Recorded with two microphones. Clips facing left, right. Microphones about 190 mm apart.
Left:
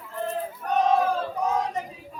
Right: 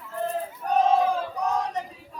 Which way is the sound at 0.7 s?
30° right (ahead or behind).